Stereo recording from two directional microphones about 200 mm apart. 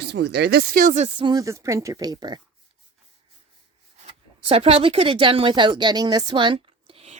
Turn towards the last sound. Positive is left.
turn(degrees=-30)  # may be behind; listen again after turning